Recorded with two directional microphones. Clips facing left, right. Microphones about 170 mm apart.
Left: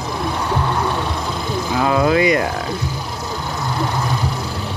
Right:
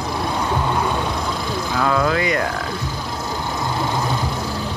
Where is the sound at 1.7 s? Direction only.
20° left (ahead or behind).